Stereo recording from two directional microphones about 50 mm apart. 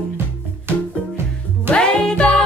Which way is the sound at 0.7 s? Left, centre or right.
Right.